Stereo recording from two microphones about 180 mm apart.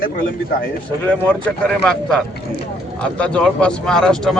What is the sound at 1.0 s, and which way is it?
A man's voice, 10° left (ahead or behind).